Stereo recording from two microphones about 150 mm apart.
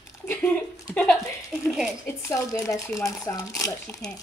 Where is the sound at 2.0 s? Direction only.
15° left (ahead or behind).